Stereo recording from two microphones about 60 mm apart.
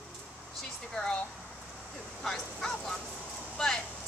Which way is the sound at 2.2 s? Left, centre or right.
Centre.